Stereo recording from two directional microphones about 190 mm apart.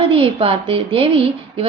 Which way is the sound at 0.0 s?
30° right (ahead or behind).